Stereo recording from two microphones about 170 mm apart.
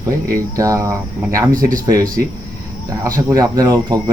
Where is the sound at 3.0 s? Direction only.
20° right (ahead or behind).